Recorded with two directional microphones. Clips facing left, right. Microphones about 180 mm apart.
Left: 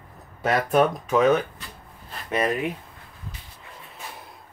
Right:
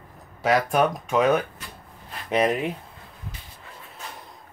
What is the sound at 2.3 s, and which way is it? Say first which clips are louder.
Speech: right 2 dB; 20° right (ahead or behind).